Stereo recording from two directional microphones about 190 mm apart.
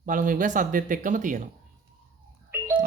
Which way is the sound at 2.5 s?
10° right (ahead or behind).